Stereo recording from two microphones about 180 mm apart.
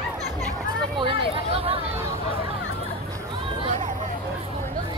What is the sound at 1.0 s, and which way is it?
Chatter, 30° right (ahead or behind).